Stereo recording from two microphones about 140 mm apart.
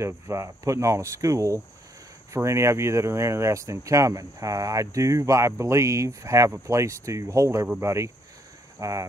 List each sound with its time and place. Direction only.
0.0 s speech: 20° right (ahead or behind)